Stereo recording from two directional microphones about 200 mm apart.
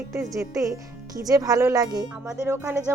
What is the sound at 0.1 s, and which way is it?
Speech, 15° right (ahead or behind).